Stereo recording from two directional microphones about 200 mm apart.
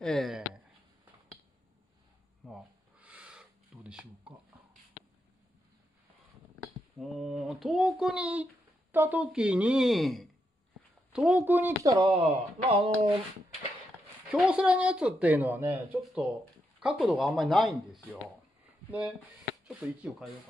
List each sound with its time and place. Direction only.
0.0 s speech: centre (ahead or behind)
2.4 s a sound: 5° right (ahead or behind)
7.0 s a woman's voice: centre (ahead or behind); by 12.2 s 15° right (ahead or behind)
12.2 s speech: 30° right (ahead or behind)
14.3 s a woman's voice: 5° right (ahead or behind)